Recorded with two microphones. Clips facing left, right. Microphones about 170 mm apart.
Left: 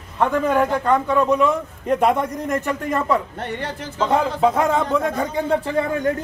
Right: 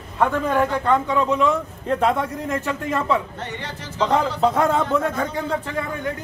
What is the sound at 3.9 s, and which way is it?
Speech, 5° left (ahead or behind).